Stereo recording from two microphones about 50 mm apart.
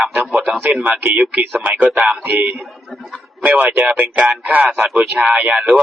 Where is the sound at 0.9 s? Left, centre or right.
Right.